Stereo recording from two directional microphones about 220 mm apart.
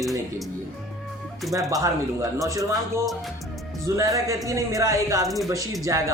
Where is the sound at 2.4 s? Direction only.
15° right (ahead or behind).